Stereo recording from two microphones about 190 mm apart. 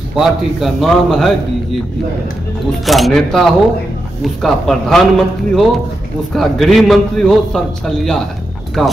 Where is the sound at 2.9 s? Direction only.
Centre (ahead or behind).